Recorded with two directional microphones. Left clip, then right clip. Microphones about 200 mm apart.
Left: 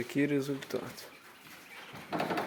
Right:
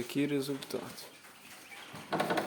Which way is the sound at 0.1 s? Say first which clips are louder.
Left 2 dB; 5° right (ahead or behind).